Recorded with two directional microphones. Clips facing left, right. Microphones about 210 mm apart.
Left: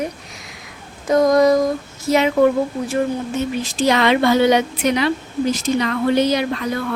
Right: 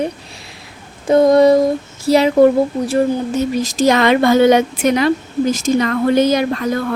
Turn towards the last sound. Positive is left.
turn(degrees=-45)  # may be behind; listen again after turning